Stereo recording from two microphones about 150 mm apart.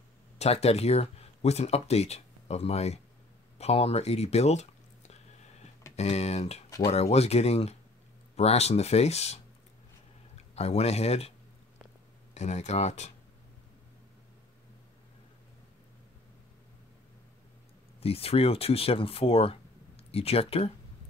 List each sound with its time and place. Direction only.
0.4 s speech: 45° left (ahead or behind)
3.5 s a sound: 45° left (ahead or behind)
5.9 s speech: 45° left (ahead or behind)
12.4 s speech: 50° left (ahead or behind)
18.0 s speech: 40° left (ahead or behind)